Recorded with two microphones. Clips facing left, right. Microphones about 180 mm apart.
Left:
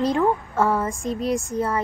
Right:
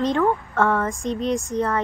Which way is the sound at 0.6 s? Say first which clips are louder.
Right 1 dB; centre (ahead or behind).